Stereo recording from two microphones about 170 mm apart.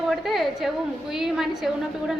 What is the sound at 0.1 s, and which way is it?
A woman's voice, centre (ahead or behind).